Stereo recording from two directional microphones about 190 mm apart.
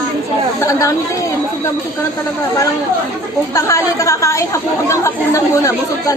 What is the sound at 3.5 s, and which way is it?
Speech, 15° left (ahead or behind).